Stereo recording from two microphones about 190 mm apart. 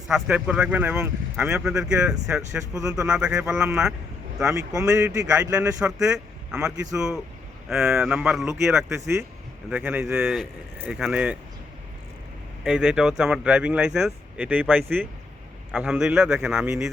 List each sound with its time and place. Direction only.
0.1 s speech: 5° right (ahead or behind)
4.5 s a man's voice: 15° right (ahead or behind)
5.8 s speech: 5° right (ahead or behind)
8.9 s a man's voice: 15° right (ahead or behind)
12.6 s speech: 5° right (ahead or behind)